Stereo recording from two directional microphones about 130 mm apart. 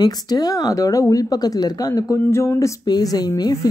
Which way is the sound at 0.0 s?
30° left (ahead or behind).